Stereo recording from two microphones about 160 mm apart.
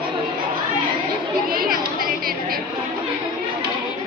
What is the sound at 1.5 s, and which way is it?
Children playing, 65° right (ahead or behind).